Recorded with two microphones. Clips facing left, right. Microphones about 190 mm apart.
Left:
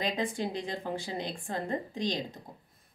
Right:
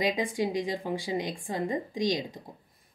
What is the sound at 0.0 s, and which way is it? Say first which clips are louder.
A woman's voice: right 4 dB; 15° right (ahead or behind).